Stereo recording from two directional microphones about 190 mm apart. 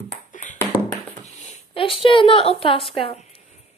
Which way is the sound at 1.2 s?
30° left (ahead or behind).